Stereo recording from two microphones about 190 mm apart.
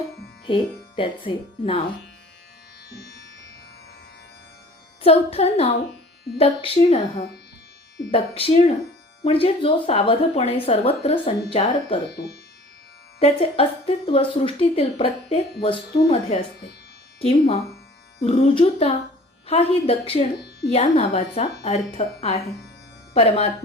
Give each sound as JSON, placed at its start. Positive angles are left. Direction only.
{"t": 0.4, "sound": "speech", "side_deg": 25}
{"t": 5.0, "sound": "speech", "side_deg": 30}
{"t": 8.1, "sound": "speech", "side_deg": 30}
{"t": 13.1, "sound": "speech", "side_deg": 30}